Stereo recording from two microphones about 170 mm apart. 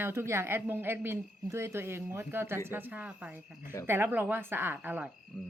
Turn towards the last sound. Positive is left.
turn(degrees=-10)  # may be behind; listen again after turning